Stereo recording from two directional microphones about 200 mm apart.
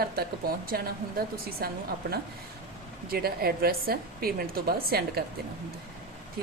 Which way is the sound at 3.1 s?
50° right (ahead or behind).